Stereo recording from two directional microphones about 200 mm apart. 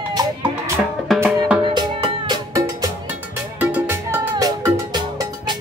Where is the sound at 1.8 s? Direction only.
20° right (ahead or behind).